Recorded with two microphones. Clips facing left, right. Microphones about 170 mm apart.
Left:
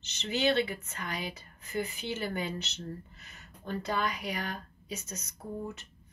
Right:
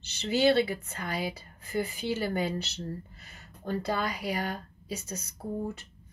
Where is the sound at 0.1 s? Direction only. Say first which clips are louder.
Right 5 dB; 35° right (ahead or behind).